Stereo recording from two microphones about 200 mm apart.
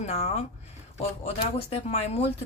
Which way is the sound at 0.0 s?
30° left (ahead or behind).